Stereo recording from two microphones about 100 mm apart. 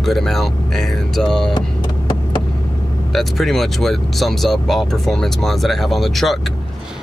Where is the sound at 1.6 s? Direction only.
50° left (ahead or behind).